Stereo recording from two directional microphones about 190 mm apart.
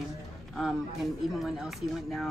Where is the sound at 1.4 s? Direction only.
Centre (ahead or behind).